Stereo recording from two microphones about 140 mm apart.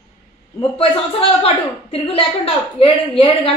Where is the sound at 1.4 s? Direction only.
45° left (ahead or behind).